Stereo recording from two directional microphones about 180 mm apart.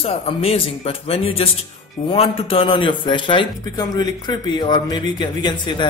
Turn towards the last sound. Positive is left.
turn(degrees=25)  # may be behind; listen again after turning